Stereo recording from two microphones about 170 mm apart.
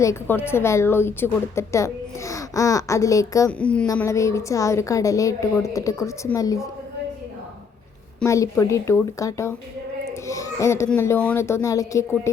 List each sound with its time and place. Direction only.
0.0 s a woman's voice: 15° left (ahead or behind)
3.6 s a woman's voice: 5° left (ahead or behind)
8.2 s a woman's voice: 15° left (ahead or behind)